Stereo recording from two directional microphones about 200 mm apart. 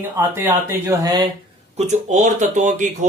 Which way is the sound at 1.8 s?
35° right (ahead or behind).